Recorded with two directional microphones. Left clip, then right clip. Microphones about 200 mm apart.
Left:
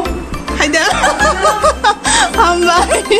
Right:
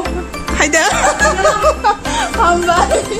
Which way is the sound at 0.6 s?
30° right (ahead or behind).